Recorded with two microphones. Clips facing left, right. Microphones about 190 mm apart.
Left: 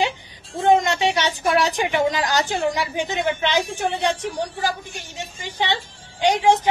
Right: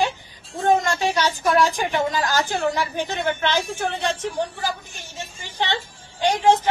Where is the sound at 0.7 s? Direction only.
20° left (ahead or behind).